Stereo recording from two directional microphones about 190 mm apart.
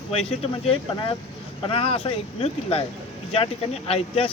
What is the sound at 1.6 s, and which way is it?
Speech, 30° left (ahead or behind).